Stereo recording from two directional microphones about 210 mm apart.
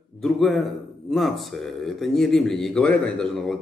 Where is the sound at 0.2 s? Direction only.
Centre (ahead or behind).